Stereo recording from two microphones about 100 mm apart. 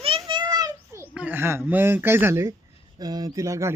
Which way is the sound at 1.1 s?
20° right (ahead or behind).